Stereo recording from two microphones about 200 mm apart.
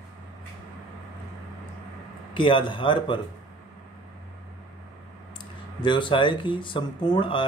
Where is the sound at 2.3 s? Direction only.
25° left (ahead or behind).